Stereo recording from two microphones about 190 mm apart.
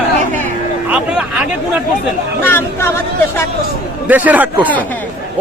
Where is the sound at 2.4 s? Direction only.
10° left (ahead or behind).